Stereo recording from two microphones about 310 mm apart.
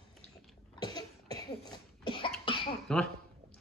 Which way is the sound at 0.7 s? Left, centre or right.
Centre.